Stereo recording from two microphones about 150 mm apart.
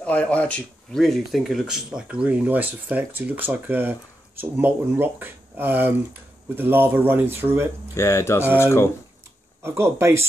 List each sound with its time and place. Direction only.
0.0 s speech: 10° left (ahead or behind); by 7.6 s 15° right (ahead or behind)
7.9 s speech: 20° left (ahead or behind)
9.6 s speech: 15° right (ahead or behind)